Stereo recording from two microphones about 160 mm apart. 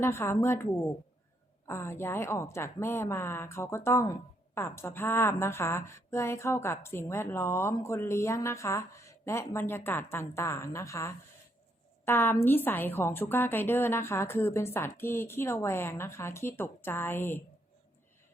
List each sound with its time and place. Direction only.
0.0 s a woman's voice: 15° left (ahead or behind)